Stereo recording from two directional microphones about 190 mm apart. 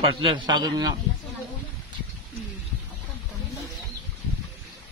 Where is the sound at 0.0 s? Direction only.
30° right (ahead or behind).